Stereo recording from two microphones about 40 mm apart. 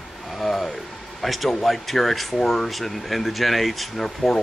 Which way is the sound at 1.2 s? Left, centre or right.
Centre.